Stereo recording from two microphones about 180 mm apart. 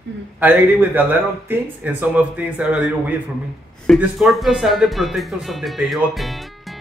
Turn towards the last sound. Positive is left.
turn(degrees=0)  # may be behind; listen again after turning